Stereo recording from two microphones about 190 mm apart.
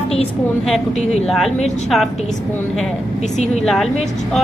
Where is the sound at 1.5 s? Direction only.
35° left (ahead or behind).